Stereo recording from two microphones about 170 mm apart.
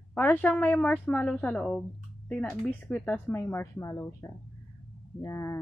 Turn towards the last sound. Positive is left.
turn(degrees=15)  # may be behind; listen again after turning